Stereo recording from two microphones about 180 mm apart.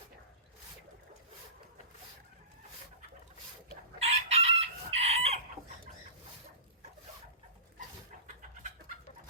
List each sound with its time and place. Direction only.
4.0 s chicken: 35° right (ahead or behind)
8.4 s bird: 45° right (ahead or behind)